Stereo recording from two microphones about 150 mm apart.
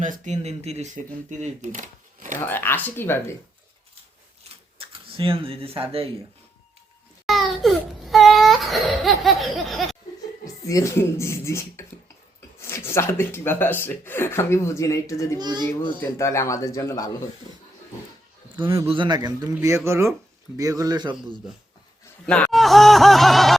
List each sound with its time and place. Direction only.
0.0 s speech: 55° right (ahead or behind)
1.3 s speech: 55° right (ahead or behind)
2.4 s speech: 15° left (ahead or behind)
4.4 s a sound: 40° right (ahead or behind)
4.8 s speech: 35° right (ahead or behind)
7.3 s baby cry: centre (ahead or behind)
10.4 s speech: 20° left (ahead or behind)
15.4 s a man's voice: 30° right (ahead or behind)
16.0 s speech: 20° left (ahead or behind)
18.5 s a man's voice: 35° right (ahead or behind)
22.3 s speech: 5° left (ahead or behind)